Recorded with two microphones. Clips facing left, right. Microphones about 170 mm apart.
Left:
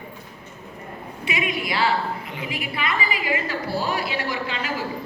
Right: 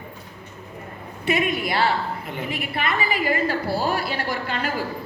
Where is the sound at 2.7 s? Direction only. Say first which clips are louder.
Right 2 dB; 55° right (ahead or behind).